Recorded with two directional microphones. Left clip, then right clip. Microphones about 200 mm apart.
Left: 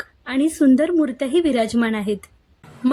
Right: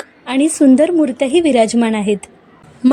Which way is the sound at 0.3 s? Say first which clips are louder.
Right 5 dB; 20° right (ahead or behind).